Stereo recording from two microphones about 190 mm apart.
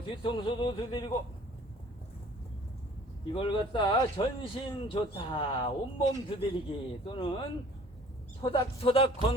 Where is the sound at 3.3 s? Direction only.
25° left (ahead or behind).